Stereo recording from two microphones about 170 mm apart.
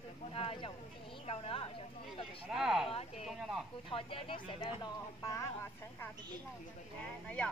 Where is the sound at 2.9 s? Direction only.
35° left (ahead or behind); by 5.5 s 20° left (ahead or behind).